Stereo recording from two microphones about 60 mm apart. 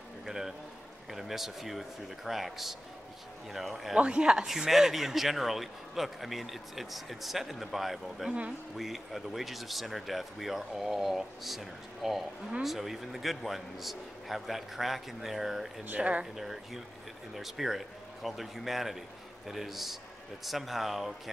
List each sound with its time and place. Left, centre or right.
0.2 s a sound: centre
1.1 s speech: centre
3.9 s speech: centre
8.3 s speech: centre
8.7 s speech: centre
15.8 s speech: right
16.3 s speech: centre